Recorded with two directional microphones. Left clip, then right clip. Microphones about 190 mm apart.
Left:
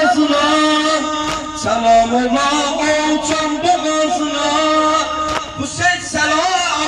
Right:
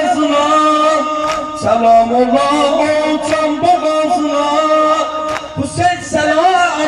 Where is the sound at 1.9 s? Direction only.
25° right (ahead or behind).